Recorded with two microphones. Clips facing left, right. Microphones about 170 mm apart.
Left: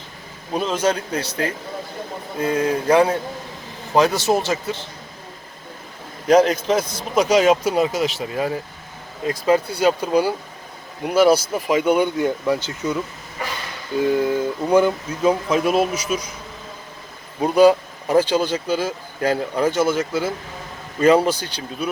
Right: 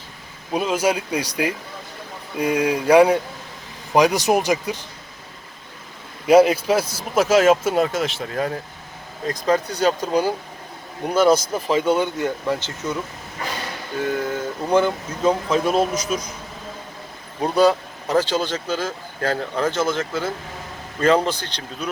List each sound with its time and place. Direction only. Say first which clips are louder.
0.5 s speech: even; 10° right (ahead or behind)
6.2 s a man's voice: right 1 dB; 10° right (ahead or behind); by 12.7 s 15° left (ahead or behind)
13.9 s speech: left 5 dB; 15° left (ahead or behind)
17.4 s speech: left 3 dB; 10° left (ahead or behind)